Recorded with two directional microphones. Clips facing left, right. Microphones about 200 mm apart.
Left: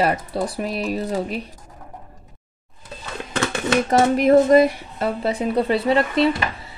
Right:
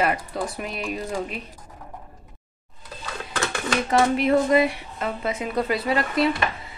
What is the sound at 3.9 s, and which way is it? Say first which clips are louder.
A woman's voice: left 4 dB; 40° left (ahead or behind).